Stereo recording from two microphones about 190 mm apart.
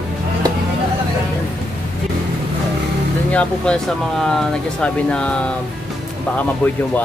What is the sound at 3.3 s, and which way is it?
Speech, 5° left (ahead or behind).